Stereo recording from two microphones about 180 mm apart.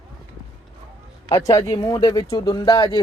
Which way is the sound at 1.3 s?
20° left (ahead or behind).